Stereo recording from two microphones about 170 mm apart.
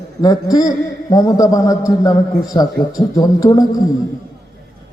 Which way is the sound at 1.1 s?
20° left (ahead or behind).